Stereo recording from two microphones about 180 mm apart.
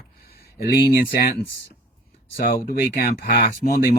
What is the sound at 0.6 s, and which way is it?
Speech, 55° left (ahead or behind).